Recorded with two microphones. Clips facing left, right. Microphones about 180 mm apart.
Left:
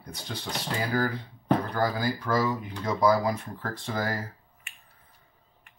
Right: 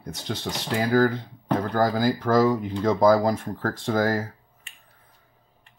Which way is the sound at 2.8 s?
50° right (ahead or behind).